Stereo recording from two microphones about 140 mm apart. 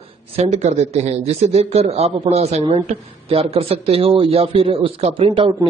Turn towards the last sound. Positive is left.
turn(degrees=-40)  # may be behind; listen again after turning